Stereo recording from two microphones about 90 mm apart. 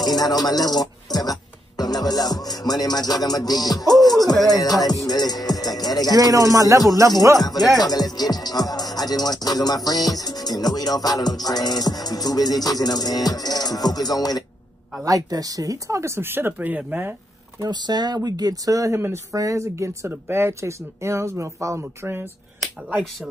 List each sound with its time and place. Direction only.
0.0 s music: 45° left (ahead or behind)
4.2 s music: centre (ahead or behind)
4.6 s music: 45° left (ahead or behind)
6.3 s speech: 40° right (ahead or behind)
7.8 s music: 45° left (ahead or behind)
15.0 s speech: 40° right (ahead or behind); by 17.1 s 15° right (ahead or behind)
17.6 s speech: 50° right (ahead or behind); by 22.3 s 25° right (ahead or behind)